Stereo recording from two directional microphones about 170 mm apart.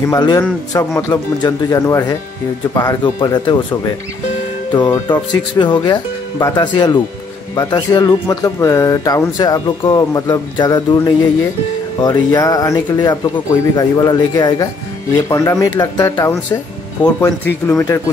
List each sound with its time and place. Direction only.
0.1 s speech: 25° left (ahead or behind)